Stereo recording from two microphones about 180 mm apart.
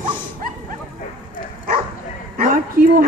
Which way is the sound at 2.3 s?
50° right (ahead or behind).